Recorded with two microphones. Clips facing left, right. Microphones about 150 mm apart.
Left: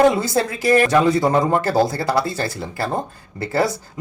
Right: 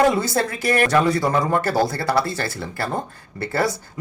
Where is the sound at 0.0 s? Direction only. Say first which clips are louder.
Left 2 dB; 20° left (ahead or behind).